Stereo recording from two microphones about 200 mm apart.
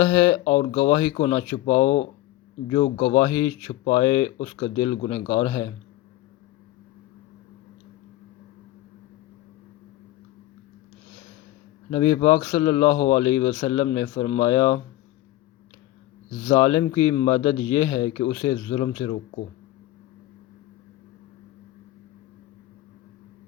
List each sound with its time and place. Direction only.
0.0 s speech: 20° left (ahead or behind)
0.5 s speech: 35° left (ahead or behind)
0.8 s speech: 20° left (ahead or behind)
1.5 s speech: 35° left (ahead or behind)
3.2 s speech: 25° left (ahead or behind)
11.9 s speech: 25° left (ahead or behind)
16.5 s speech: 20° left (ahead or behind)